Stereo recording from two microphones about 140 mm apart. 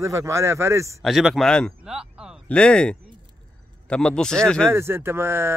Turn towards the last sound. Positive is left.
turn(degrees=-15)  # may be behind; listen again after turning